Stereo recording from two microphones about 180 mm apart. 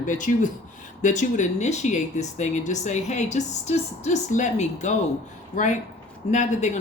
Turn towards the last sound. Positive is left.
turn(degrees=40)  # may be behind; listen again after turning